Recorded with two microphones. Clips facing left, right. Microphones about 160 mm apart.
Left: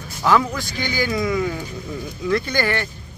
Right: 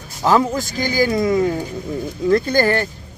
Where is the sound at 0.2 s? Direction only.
35° right (ahead or behind).